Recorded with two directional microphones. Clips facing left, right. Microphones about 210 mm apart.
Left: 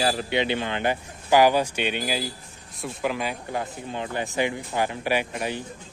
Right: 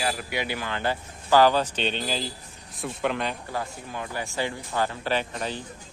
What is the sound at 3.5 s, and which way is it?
Speech, 20° left (ahead or behind).